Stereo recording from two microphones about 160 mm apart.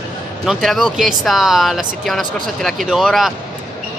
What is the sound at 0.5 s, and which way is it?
Speech, centre (ahead or behind).